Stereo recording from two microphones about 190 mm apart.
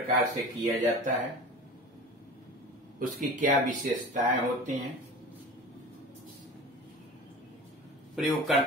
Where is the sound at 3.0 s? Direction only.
45° right (ahead or behind).